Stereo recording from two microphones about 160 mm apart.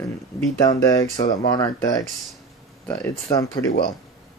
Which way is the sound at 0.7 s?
20° left (ahead or behind).